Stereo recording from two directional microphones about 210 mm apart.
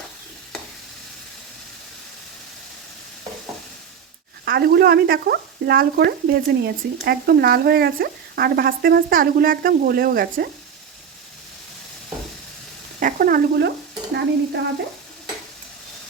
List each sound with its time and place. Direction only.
4.4 s speech: 50° right (ahead or behind)
13.0 s stir: 40° right (ahead or behind)